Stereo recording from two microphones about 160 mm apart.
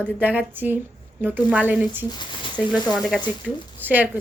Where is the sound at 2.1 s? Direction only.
30° left (ahead or behind).